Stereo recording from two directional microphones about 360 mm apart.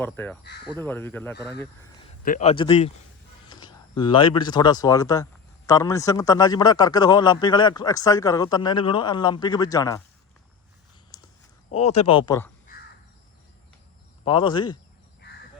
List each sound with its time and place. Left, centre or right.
0.0 s speech: centre
2.2 s speech: centre
11.7 s speech: centre
14.3 s speech: centre